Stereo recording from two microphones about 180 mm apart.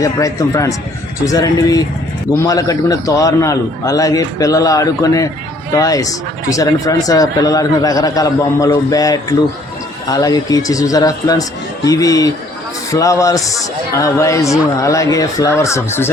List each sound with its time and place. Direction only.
0.0 s a man's voice: 20° left (ahead or behind)